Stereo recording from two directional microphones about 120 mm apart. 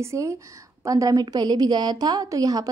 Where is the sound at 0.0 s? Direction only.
25° right (ahead or behind).